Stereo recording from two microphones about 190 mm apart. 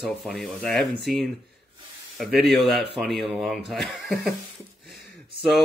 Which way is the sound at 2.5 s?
Centre (ahead or behind).